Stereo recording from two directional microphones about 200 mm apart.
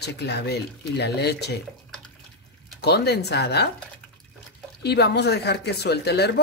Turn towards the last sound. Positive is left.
turn(degrees=55)  # may be behind; listen again after turning